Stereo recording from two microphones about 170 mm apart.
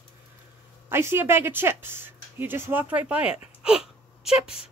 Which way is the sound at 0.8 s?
15° right (ahead or behind).